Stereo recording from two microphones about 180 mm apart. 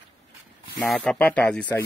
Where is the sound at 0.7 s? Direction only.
5° left (ahead or behind).